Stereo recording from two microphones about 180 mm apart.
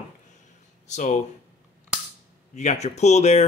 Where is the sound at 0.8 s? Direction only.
40° left (ahead or behind).